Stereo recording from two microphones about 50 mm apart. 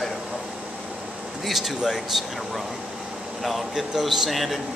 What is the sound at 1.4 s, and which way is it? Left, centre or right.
A man's voice, centre.